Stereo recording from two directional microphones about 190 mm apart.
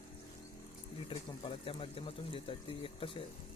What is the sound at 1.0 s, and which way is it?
Speech, 30° left (ahead or behind).